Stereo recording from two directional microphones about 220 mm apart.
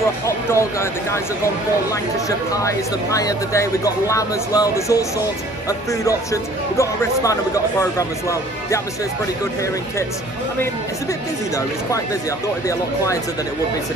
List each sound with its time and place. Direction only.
0.5 s speech: 10° left (ahead or behind)
11.5 s speech: 15° left (ahead or behind)